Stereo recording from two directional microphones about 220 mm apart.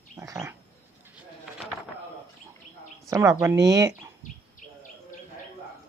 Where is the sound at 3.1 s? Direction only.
15° right (ahead or behind).